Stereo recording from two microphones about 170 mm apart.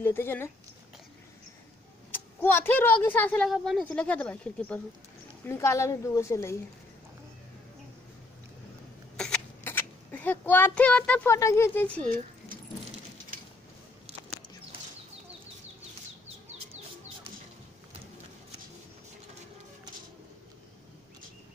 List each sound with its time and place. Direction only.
0.0 s speech: 15° left (ahead or behind)
2.0 s speech: 10° left (ahead or behind)
9.1 s a sound: 5° left (ahead or behind)
9.6 s speech: 10° left (ahead or behind)